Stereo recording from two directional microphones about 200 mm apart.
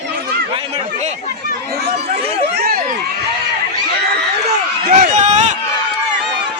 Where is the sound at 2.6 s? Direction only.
50° right (ahead or behind).